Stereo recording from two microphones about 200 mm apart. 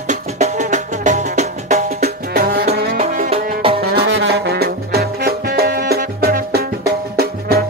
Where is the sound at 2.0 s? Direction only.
50° right (ahead or behind).